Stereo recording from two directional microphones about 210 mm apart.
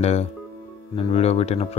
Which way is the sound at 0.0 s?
30° left (ahead or behind).